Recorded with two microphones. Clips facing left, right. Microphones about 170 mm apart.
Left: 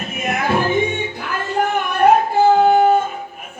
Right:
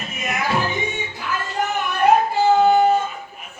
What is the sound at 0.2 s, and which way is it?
Music, 55° left (ahead or behind).